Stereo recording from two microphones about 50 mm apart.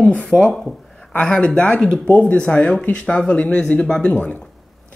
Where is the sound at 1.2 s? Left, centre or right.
Centre.